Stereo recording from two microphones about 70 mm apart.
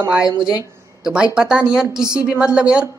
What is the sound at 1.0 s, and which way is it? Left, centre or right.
A woman's voice, centre.